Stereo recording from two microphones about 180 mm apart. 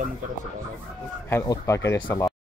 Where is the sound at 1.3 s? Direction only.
15° left (ahead or behind).